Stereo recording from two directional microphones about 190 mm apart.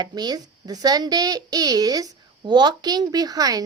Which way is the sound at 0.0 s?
20° right (ahead or behind).